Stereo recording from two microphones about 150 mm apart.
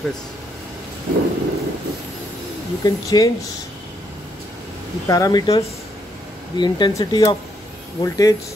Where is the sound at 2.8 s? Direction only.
25° left (ahead or behind).